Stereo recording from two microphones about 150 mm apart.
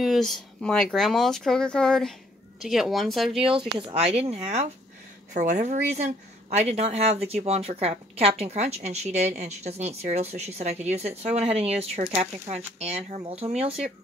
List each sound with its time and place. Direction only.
0.0 s speech: centre (ahead or behind)
3.9 s speech: 40° right (ahead or behind)